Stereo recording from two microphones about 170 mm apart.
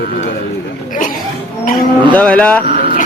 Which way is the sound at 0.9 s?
50° left (ahead or behind).